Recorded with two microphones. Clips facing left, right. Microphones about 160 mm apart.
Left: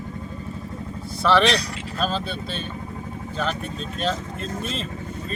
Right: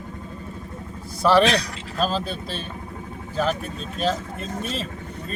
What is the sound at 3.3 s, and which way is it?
Speech, 5° right (ahead or behind).